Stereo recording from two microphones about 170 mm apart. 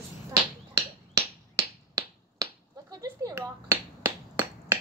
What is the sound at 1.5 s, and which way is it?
Finger snapping, 20° right (ahead or behind).